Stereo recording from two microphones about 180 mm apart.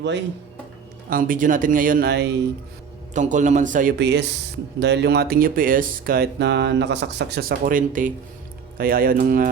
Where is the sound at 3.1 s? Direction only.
45° right (ahead or behind).